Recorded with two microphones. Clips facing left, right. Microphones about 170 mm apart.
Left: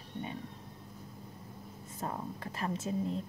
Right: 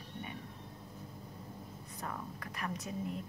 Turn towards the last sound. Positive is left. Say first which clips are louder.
# left 5 dB
turn(degrees=25)  # may be behind; listen again after turning